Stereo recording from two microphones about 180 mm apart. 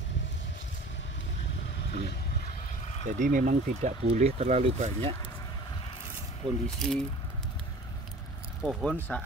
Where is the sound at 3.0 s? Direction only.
45° right (ahead or behind).